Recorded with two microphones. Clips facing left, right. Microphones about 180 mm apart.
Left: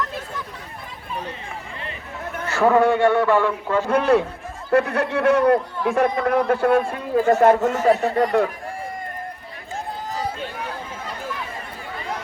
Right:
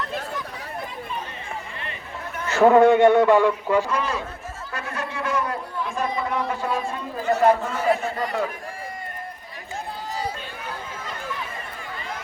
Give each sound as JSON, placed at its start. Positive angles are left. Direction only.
{"t": 2.5, "sound": "a man's voice", "side_deg": -20}
{"t": 3.8, "sound": "a man's voice", "side_deg": 60}
{"t": 7.4, "sound": "a man's voice", "side_deg": 80}
{"t": 8.1, "sound": "a man's voice", "side_deg": 55}